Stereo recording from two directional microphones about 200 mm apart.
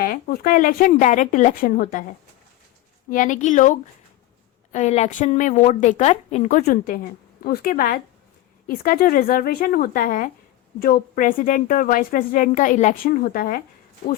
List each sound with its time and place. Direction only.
0.0 s a woman's voice: 45° left (ahead or behind)
3.1 s a woman's voice: 40° left (ahead or behind)
6.7 s a woman's voice: 50° left (ahead or behind)